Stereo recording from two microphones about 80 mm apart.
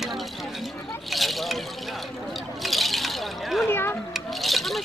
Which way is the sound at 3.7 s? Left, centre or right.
Left.